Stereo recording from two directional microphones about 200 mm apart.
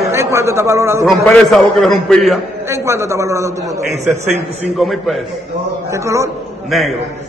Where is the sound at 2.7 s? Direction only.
15° right (ahead or behind).